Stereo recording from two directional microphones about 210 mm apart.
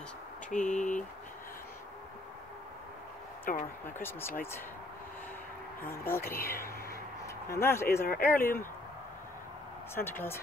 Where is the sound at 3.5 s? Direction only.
40° left (ahead or behind).